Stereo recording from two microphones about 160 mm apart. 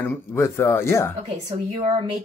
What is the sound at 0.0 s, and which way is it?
Speech, 15° left (ahead or behind).